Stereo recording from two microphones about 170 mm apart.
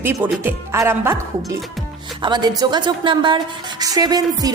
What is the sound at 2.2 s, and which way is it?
A woman's voice, 25° right (ahead or behind).